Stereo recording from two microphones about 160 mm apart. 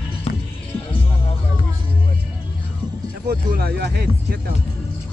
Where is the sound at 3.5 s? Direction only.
80° right.